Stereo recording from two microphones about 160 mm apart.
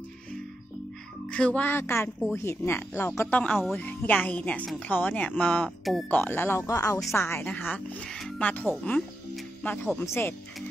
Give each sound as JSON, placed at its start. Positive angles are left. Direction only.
{"t": 1.3, "sound": "speech", "side_deg": 5}
{"t": 9.3, "sound": "music", "side_deg": 10}
{"t": 9.9, "sound": "speech", "side_deg": 15}